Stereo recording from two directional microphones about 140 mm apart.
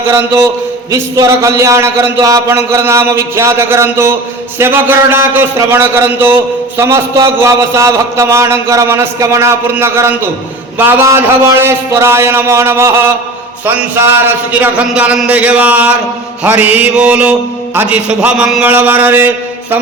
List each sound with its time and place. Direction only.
0.1 s a man's voice: 20° right (ahead or behind)